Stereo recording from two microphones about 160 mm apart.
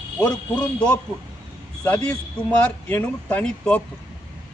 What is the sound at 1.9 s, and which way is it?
A man's voice, 20° left (ahead or behind).